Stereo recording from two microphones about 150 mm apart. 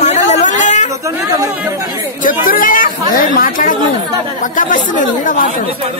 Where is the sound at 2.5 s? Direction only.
65° left (ahead or behind).